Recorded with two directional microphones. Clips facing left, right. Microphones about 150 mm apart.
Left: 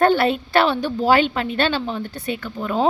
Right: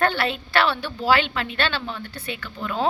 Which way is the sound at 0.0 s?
45° left (ahead or behind).